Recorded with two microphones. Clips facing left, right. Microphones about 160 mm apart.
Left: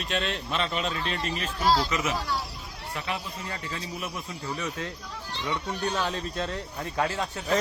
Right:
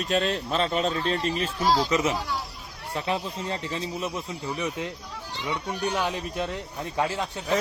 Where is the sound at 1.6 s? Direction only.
10° right (ahead or behind).